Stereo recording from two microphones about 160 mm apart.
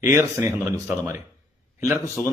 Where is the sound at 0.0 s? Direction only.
15° right (ahead or behind).